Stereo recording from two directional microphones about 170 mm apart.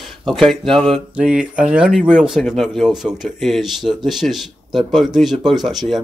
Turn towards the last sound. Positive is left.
turn(degrees=0)  # may be behind; listen again after turning